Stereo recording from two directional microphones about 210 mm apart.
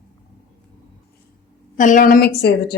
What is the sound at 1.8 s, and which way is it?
Speech, 40° left (ahead or behind).